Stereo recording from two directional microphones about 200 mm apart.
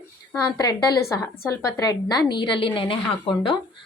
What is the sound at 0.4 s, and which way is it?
A woman's voice, 20° left (ahead or behind).